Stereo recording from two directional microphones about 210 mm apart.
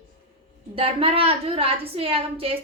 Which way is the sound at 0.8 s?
25° right (ahead or behind).